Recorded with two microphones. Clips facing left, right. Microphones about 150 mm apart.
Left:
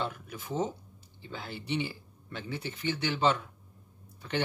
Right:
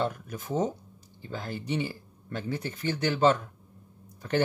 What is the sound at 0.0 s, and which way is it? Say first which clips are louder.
Speech: right 5 dB; 45° right (ahead or behind).